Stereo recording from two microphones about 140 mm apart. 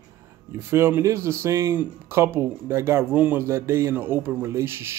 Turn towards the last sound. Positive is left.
turn(degrees=-15)  # may be behind; listen again after turning